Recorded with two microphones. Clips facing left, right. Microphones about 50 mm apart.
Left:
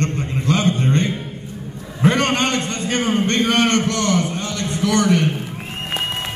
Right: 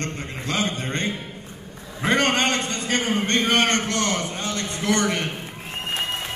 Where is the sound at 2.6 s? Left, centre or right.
Left.